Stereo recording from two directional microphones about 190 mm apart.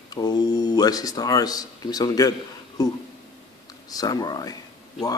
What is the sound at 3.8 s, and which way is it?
Speech, 20° left (ahead or behind).